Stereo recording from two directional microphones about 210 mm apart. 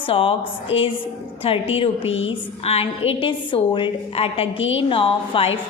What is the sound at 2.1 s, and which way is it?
Speech, 65° left (ahead or behind).